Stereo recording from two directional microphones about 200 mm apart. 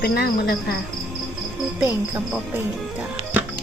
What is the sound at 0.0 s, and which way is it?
Speech, 55° left (ahead or behind).